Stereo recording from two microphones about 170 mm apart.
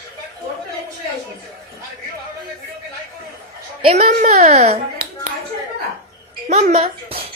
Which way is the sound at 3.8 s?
40° right (ahead or behind).